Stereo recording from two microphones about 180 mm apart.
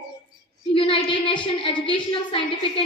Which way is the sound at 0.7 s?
30° left (ahead or behind).